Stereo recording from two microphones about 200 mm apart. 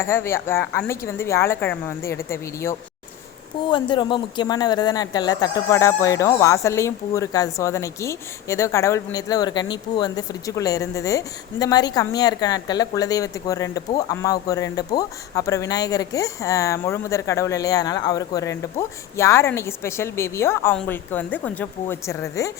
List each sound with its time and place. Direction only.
0.0 s speech: 10° left (ahead or behind)